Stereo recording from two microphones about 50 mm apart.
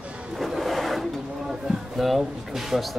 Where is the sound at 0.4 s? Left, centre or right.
Centre.